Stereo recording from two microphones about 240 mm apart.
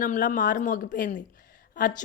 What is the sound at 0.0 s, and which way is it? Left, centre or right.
Speech, left.